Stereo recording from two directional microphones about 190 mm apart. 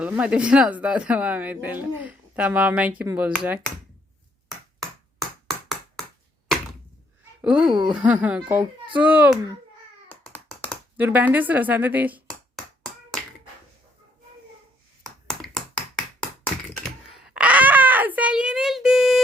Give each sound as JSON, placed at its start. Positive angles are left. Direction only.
{"t": 0.0, "sound": "speech", "side_deg": -5}
{"t": 7.4, "sound": "speech", "side_deg": -5}
{"t": 7.7, "sound": "speech", "side_deg": -25}
{"t": 7.9, "sound": "speech", "side_deg": -5}
{"t": 10.1, "sound": "a sound", "side_deg": 10}
{"t": 10.9, "sound": "speech", "side_deg": -10}
{"t": 12.5, "sound": "clapping", "side_deg": 5}
{"t": 15.3, "sound": "a sound", "side_deg": 0}